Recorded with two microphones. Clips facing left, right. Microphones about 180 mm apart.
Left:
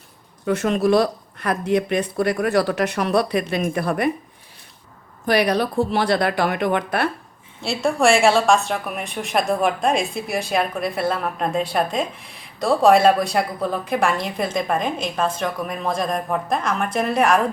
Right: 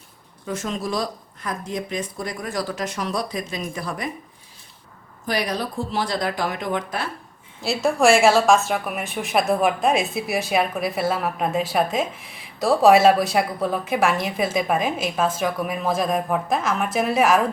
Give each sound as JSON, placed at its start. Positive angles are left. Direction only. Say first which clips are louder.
{"t": 0.4, "sound": "speech", "louder": "left 9 dB", "side_deg": 65}
{"t": 5.2, "sound": "speech", "louder": "left 6 dB", "side_deg": 65}
{"t": 7.6, "sound": "a woman's voice", "louder": "even", "side_deg": 0}